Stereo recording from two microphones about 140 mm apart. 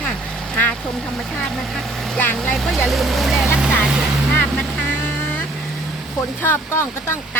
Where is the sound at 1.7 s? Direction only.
10° left (ahead or behind); by 3.9 s 5° right (ahead or behind).